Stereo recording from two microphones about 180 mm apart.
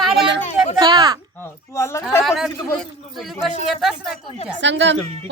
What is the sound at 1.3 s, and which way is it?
Speech, 15° left (ahead or behind).